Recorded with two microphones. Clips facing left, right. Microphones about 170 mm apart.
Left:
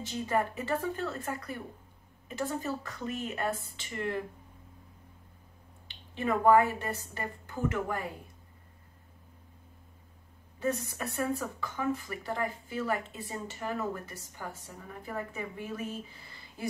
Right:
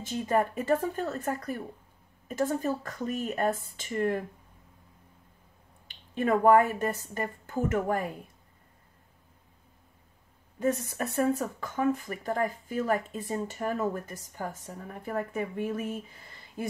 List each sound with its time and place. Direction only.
0.0 s speech: 50° right (ahead or behind)
5.9 s speech: 50° right (ahead or behind)
10.6 s speech: 50° right (ahead or behind)